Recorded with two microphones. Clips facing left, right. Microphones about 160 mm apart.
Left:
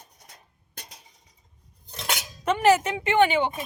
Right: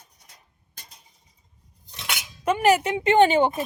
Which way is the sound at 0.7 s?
75° left (ahead or behind).